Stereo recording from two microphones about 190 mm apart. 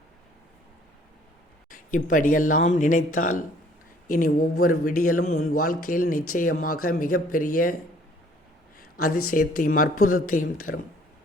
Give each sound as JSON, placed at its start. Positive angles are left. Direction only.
{"t": 1.7, "sound": "speech", "side_deg": 45}
{"t": 9.0, "sound": "speech", "side_deg": 50}